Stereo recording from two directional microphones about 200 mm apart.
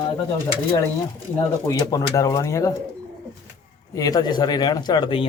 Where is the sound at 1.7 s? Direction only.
15° left (ahead or behind).